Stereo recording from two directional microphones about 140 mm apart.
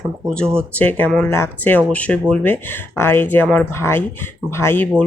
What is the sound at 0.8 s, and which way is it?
Speech, 15° left (ahead or behind).